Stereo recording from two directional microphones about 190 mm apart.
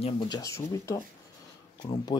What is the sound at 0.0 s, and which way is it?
Speech, 20° left (ahead or behind).